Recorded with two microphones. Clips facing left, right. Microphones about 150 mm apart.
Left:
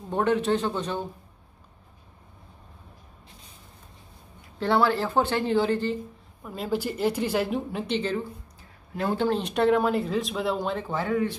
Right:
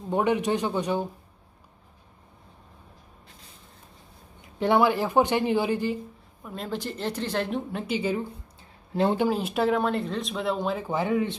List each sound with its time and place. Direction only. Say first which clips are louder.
0.1 s speech: even; 15° right (ahead or behind)
4.6 s speech: right 1 dB; 15° right (ahead or behind)
6.4 s speech: left 4 dB; 5° left (ahead or behind)
10.9 s speech: right 1 dB; 20° right (ahead or behind)